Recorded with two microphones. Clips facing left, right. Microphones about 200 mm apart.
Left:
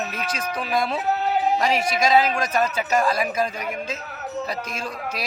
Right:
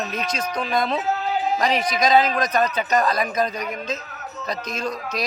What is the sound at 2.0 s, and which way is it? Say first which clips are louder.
A man's voice: right 2 dB; 5° left (ahead or behind).